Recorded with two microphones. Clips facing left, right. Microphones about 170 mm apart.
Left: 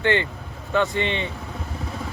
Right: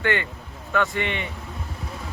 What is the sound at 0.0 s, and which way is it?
Speech, 25° left (ahead or behind).